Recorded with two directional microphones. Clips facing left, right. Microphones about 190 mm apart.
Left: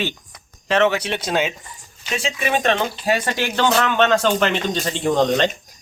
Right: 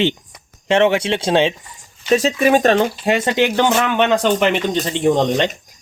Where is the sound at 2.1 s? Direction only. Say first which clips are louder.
Right 9 dB; 40° right (ahead or behind).